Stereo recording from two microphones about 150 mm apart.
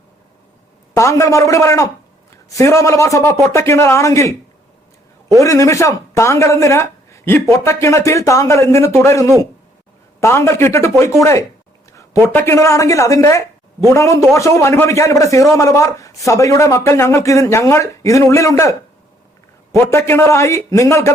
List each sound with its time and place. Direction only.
0.9 s a man's voice: 20° left (ahead or behind)
5.4 s a man's voice: 20° left (ahead or behind)
19.8 s a man's voice: 15° left (ahead or behind)